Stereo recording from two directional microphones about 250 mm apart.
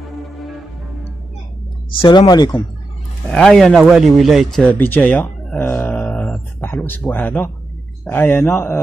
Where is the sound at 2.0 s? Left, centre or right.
Centre.